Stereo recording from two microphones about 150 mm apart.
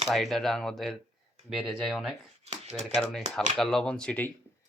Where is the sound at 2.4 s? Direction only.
45° right (ahead or behind).